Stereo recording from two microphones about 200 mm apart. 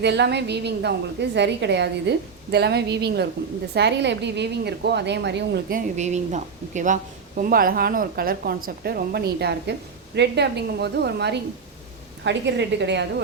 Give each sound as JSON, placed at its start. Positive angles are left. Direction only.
{"t": 0.0, "sound": "a woman's voice", "side_deg": -55}